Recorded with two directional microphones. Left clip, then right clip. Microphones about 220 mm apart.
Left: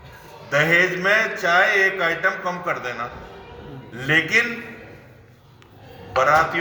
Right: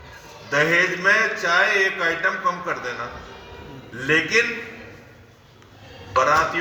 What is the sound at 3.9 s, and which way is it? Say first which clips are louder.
Speech: left 1 dB; 10° right (ahead or behind).